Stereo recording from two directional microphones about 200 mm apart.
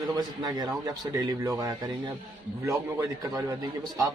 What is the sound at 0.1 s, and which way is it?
A man's voice, 20° right (ahead or behind).